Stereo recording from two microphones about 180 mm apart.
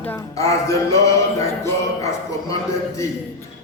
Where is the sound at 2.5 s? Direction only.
20° left (ahead or behind).